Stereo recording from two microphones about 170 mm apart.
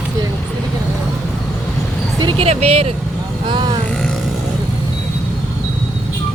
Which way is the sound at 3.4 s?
25° right (ahead or behind).